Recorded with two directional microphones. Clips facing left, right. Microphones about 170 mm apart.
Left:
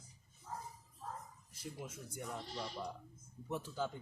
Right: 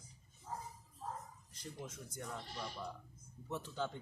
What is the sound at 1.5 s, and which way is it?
Speech, 5° left (ahead or behind).